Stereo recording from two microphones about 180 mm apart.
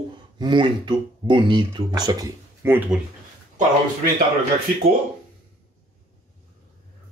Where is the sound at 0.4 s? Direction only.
25° right (ahead or behind).